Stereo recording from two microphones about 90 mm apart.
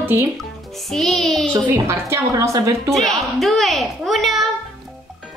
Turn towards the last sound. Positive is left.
turn(degrees=0)  # may be behind; listen again after turning